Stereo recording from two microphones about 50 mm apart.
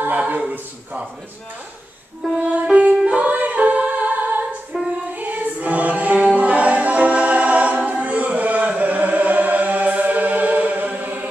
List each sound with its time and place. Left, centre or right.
0.0 s a sound: right
0.4 s a man's voice: right
2.5 s music: right
3.2 s a capella: right
5.1 s choir: right
7.8 s chant: right